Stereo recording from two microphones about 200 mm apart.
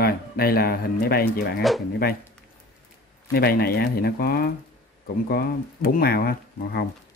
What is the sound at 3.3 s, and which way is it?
Speech, 50° left (ahead or behind).